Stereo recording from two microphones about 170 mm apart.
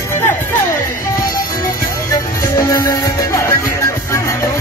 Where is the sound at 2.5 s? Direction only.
15° left (ahead or behind).